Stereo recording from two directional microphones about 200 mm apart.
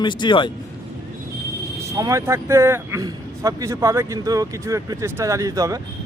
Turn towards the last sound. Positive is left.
turn(degrees=-15)  # may be behind; listen again after turning